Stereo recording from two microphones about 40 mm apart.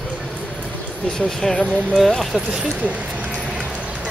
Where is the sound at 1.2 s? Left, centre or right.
Centre.